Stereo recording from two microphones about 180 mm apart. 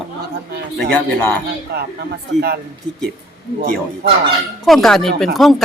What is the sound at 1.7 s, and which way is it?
Speech, 65° right (ahead or behind).